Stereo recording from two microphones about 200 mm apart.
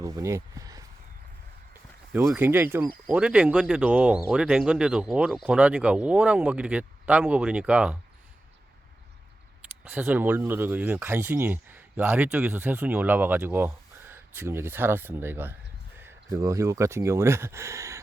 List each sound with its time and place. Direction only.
0.0 s a sound: 15° right (ahead or behind)
2.1 s speech: 10° right (ahead or behind)
9.9 s speech: 10° right (ahead or behind)